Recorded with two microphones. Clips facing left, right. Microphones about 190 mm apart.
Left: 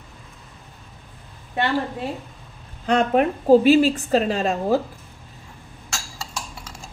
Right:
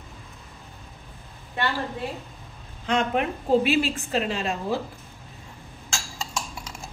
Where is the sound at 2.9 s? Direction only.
40° left (ahead or behind).